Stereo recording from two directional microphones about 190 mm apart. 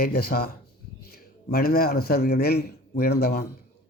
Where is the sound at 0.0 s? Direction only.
55° left (ahead or behind).